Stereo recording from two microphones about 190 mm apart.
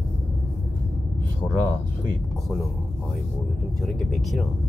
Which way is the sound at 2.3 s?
Centre (ahead or behind).